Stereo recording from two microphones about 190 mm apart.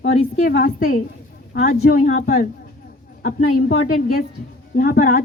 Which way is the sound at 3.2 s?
45° left (ahead or behind).